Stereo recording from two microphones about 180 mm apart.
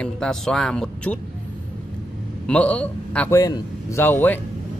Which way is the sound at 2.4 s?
5° left (ahead or behind).